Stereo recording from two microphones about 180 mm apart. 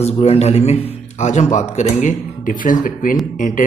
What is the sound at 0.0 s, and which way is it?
A man's voice, 35° left (ahead or behind).